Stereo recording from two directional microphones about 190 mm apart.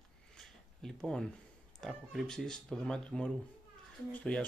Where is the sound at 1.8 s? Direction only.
Centre (ahead or behind).